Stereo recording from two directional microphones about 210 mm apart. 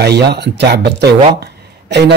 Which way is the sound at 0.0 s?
50° right (ahead or behind).